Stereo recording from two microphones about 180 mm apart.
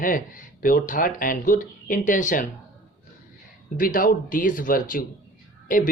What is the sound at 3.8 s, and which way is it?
Speech, 50° left (ahead or behind).